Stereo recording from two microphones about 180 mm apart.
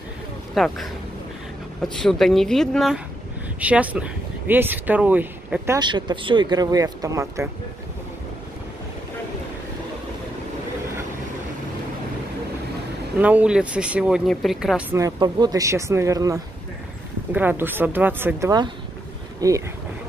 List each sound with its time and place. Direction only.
0.6 s speech: centre (ahead or behind)
1.8 s speech: centre (ahead or behind)
5.8 s speech: 25° right (ahead or behind)
13.2 s speech: 10° right (ahead or behind)